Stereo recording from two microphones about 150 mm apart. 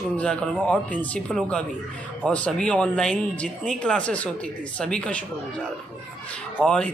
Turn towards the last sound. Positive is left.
turn(degrees=5)  # may be behind; listen again after turning